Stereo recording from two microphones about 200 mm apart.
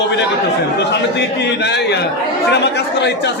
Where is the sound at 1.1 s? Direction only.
60° left (ahead or behind).